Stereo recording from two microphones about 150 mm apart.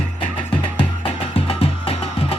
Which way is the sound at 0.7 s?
40° left (ahead or behind).